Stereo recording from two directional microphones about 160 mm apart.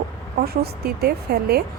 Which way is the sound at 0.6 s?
80° right.